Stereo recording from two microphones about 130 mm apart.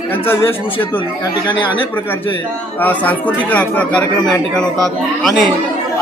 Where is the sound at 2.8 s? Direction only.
10° left (ahead or behind).